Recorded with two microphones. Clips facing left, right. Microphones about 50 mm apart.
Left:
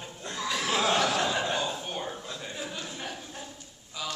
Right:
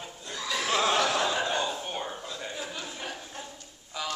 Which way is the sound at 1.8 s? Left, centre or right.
Centre.